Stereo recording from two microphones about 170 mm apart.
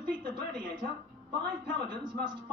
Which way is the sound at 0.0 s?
25° right (ahead or behind).